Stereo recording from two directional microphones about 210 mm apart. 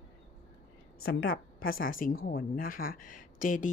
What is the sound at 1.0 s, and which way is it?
Speech, 45° left (ahead or behind).